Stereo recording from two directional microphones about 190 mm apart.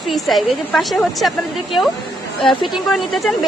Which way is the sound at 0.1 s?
Centre (ahead or behind).